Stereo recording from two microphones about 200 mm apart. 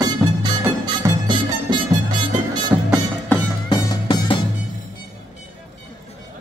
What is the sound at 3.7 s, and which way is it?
Music, 20° left (ahead or behind).